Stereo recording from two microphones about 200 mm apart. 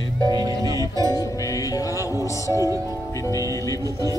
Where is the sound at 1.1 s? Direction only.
20° left (ahead or behind).